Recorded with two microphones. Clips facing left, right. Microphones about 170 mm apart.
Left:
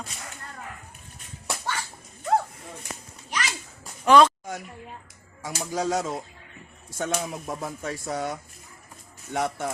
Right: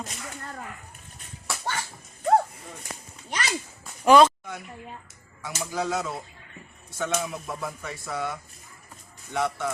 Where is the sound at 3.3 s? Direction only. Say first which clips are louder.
Right 1 dB; 40° right (ahead or behind).